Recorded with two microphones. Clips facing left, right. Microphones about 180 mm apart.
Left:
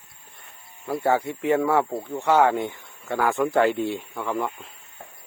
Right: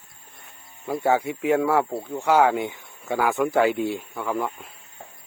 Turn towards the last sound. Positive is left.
turn(degrees=0)  # may be behind; listen again after turning